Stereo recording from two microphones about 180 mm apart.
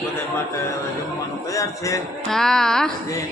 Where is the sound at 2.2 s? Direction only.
Centre (ahead or behind).